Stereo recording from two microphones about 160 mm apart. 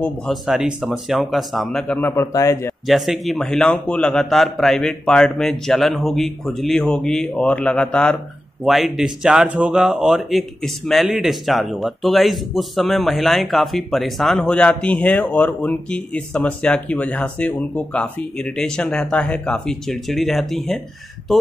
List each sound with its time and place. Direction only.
0.0 s speech: centre (ahead or behind)
2.1 s a man's voice: 20° left (ahead or behind)
2.9 s speech: centre (ahead or behind)